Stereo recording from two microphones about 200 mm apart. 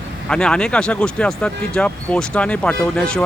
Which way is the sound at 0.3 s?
5° left (ahead or behind).